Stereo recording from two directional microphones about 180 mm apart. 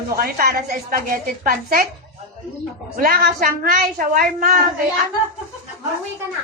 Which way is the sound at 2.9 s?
50° right (ahead or behind).